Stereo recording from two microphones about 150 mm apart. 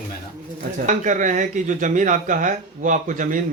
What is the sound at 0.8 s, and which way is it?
Speech, 60° right (ahead or behind).